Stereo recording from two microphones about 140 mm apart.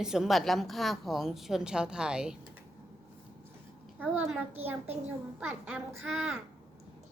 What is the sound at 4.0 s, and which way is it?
A child's voice, 10° right (ahead or behind).